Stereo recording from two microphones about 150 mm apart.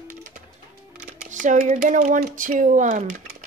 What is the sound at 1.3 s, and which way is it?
Speech, 55° right (ahead or behind).